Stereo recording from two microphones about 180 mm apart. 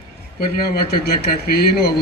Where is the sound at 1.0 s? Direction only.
60° left (ahead or behind).